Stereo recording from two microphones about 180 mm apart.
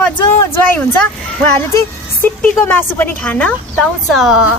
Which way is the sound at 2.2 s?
10° left (ahead or behind).